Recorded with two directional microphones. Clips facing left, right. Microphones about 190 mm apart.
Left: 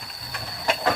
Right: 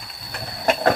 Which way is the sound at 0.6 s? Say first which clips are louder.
Right 5 dB; 50° right (ahead or behind).